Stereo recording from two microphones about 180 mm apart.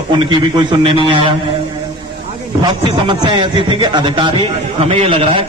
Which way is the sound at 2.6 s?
25° right (ahead or behind).